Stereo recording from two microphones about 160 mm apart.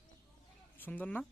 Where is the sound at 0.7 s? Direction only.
10° left (ahead or behind).